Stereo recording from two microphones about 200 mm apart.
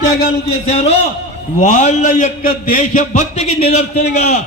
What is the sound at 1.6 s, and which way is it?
A man's voice, 35° left (ahead or behind).